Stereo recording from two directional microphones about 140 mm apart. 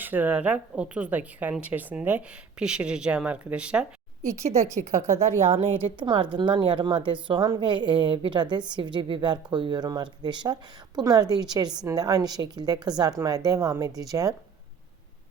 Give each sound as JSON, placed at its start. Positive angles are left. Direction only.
{"t": 0.0, "sound": "speech", "side_deg": -15}
{"t": 4.3, "sound": "a woman's voice", "side_deg": -50}
{"t": 5.5, "sound": "speech", "side_deg": -40}